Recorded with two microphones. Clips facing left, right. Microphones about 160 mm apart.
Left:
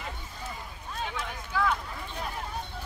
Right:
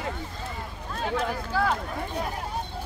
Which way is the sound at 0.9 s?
50° right (ahead or behind).